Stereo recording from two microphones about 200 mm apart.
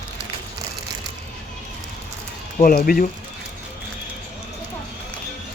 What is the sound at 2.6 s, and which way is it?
Speech, 45° left (ahead or behind).